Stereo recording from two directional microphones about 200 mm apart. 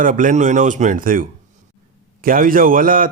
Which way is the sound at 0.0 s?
40° right (ahead or behind).